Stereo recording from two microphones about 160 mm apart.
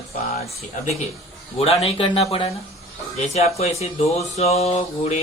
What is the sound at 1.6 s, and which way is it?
Mantra, 40° left (ahead or behind).